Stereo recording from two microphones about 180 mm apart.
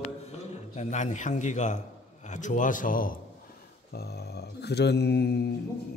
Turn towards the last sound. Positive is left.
turn(degrees=65)  # may be behind; listen again after turning